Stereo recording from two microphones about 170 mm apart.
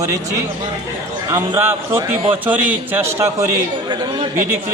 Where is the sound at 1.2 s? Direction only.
15° right (ahead or behind).